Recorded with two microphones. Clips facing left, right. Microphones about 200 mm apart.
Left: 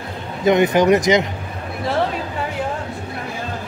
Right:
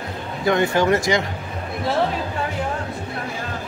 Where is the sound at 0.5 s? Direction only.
20° left (ahead or behind).